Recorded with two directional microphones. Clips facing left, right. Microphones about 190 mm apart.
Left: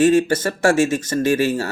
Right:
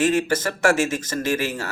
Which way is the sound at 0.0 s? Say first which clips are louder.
Left 5 dB; 30° left (ahead or behind).